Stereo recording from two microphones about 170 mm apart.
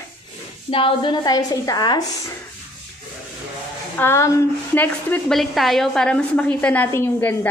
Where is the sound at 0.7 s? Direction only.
30° left (ahead or behind).